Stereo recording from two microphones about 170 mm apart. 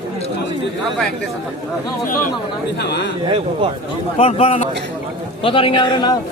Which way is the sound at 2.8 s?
75° left (ahead or behind).